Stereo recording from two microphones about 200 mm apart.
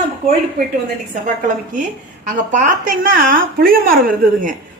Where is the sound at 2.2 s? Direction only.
40° right (ahead or behind).